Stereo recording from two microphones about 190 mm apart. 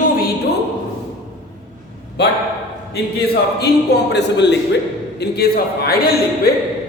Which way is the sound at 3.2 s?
55° left (ahead or behind).